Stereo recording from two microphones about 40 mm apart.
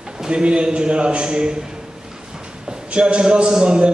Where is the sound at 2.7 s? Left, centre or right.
Right.